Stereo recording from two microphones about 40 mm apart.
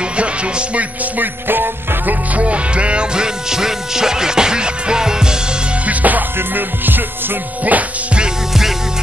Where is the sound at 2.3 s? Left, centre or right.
Right.